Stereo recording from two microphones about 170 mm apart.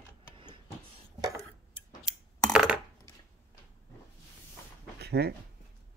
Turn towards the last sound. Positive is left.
turn(degrees=-70)  # may be behind; listen again after turning